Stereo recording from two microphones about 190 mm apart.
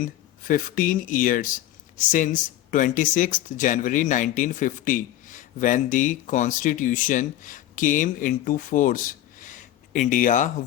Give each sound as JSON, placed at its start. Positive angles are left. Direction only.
{"t": 0.0, "sound": "speech", "side_deg": 45}